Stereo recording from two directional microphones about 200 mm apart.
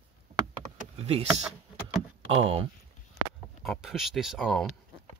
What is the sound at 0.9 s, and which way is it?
Speech, 30° right (ahead or behind).